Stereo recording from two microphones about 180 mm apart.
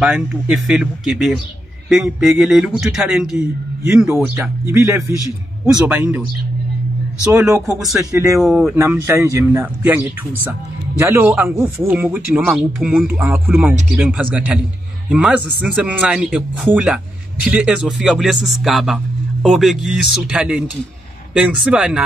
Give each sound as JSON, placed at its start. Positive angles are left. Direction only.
{"t": 0.0, "sound": "speech", "side_deg": -5}
{"t": 7.2, "sound": "speech", "side_deg": -15}
{"t": 8.4, "sound": "speech", "side_deg": 0}
{"t": 8.7, "sound": "speech", "side_deg": -15}